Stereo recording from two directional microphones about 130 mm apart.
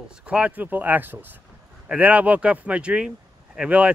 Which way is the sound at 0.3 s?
10° right (ahead or behind).